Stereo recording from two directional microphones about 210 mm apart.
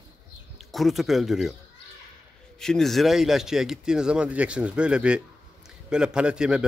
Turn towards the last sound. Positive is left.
turn(degrees=-5)  # may be behind; listen again after turning